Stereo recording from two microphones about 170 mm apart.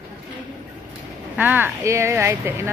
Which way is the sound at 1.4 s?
10° right (ahead or behind).